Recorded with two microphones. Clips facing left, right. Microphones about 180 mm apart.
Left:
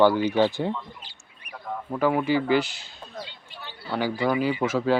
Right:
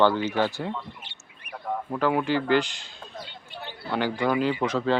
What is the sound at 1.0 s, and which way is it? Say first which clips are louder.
Speech: right 1 dB; 25° right (ahead or behind).